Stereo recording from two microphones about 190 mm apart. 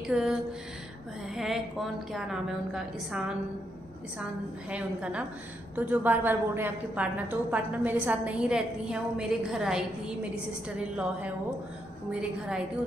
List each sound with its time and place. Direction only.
0.0 s a sound: 5° right (ahead or behind)
1.3 s a woman's voice: centre (ahead or behind)
4.6 s a woman's voice: 5° right (ahead or behind)
12.1 s a woman's voice: 5° right (ahead or behind)